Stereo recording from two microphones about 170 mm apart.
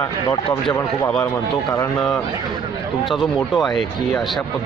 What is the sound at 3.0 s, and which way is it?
Speech, centre (ahead or behind).